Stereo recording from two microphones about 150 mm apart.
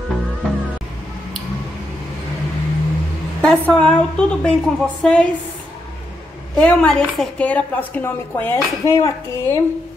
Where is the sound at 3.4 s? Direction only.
5° left (ahead or behind).